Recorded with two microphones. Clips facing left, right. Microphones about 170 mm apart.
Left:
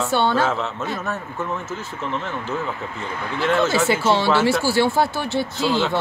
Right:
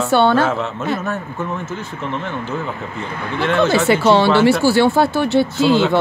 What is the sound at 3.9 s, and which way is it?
Speech, 65° right (ahead or behind).